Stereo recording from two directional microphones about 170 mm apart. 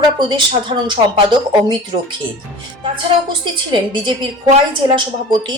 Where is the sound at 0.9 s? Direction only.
25° right (ahead or behind).